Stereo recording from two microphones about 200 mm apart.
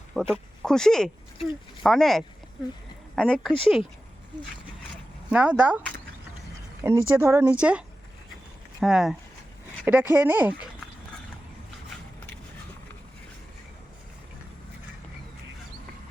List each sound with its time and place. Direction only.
0.1 s speech: centre (ahead or behind)
5.3 s speech: 5° right (ahead or behind)
6.8 s speech: 10° right (ahead or behind)